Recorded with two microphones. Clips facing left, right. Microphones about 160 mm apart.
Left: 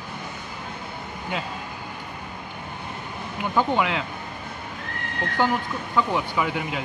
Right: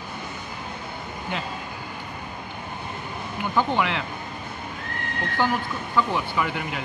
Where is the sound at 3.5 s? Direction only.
10° left (ahead or behind).